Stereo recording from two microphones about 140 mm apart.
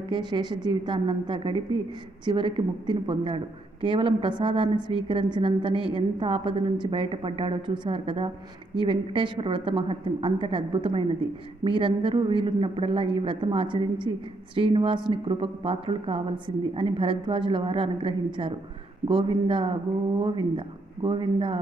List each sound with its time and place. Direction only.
0.1 s a woman's voice: 30° right (ahead or behind)